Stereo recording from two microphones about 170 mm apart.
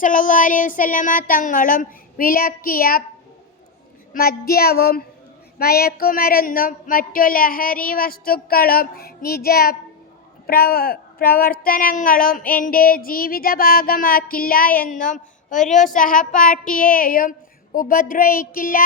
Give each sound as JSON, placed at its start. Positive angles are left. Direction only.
{"t": 0.0, "sound": "a woman's voice", "side_deg": 50}
{"t": 4.1, "sound": "a woman's voice", "side_deg": 60}